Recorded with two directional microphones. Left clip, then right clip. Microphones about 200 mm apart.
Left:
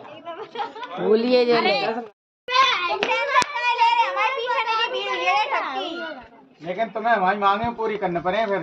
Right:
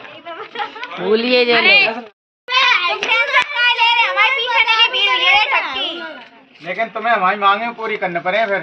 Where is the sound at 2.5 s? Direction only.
50° left (ahead or behind).